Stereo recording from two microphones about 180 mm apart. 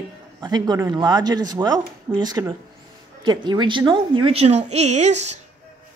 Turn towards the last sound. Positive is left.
turn(degrees=-40)  # may be behind; listen again after turning